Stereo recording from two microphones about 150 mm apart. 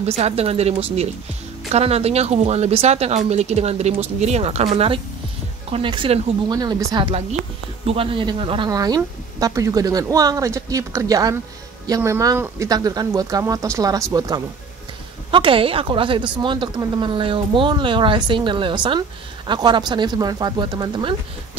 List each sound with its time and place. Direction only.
0.0 s speech: 45° right (ahead or behind)
6.5 s speech: 25° right (ahead or behind)
7.8 s speech: 40° right (ahead or behind)
15.3 s speech: 35° right (ahead or behind)